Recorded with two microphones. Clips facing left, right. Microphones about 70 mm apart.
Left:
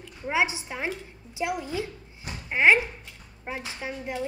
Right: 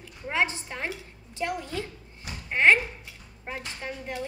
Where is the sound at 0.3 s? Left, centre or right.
Centre.